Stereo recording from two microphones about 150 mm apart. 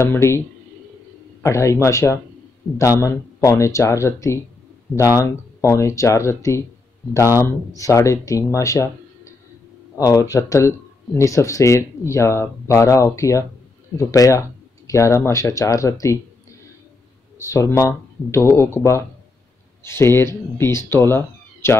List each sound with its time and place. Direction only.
0.0 s speech: 15° left (ahead or behind)
1.4 s speech: 20° left (ahead or behind)
17.4 s speech: 20° left (ahead or behind)